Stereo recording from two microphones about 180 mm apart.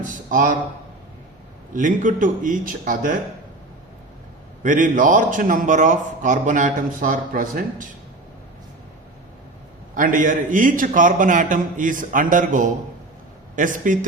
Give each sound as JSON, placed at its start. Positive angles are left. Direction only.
{"t": 0.1, "sound": "a sound", "side_deg": -45}
{"t": 1.7, "sound": "a man's voice", "side_deg": -45}
{"t": 4.6, "sound": "a man's voice", "side_deg": -45}
{"t": 9.9, "sound": "a man's voice", "side_deg": -50}